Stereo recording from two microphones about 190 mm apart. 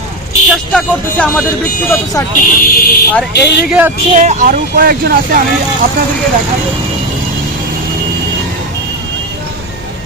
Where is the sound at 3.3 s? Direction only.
60° left (ahead or behind).